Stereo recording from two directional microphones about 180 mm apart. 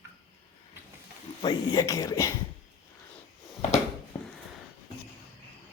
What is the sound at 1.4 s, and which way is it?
Speech, 20° left (ahead or behind).